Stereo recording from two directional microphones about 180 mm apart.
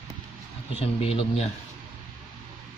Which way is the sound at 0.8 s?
35° left (ahead or behind).